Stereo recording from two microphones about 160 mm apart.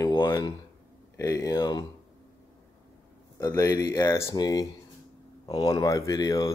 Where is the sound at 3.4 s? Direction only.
20° left (ahead or behind).